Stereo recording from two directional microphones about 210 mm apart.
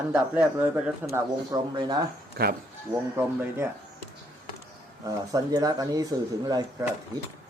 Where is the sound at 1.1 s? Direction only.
20° right (ahead or behind).